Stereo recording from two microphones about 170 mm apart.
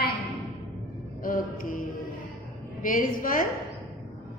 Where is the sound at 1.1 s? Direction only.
55° left (ahead or behind).